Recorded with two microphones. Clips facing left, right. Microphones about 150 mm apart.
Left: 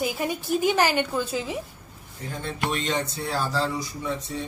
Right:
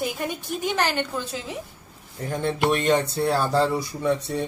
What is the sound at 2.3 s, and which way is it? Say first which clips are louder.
Speech: right 6 dB; 60° right (ahead or behind).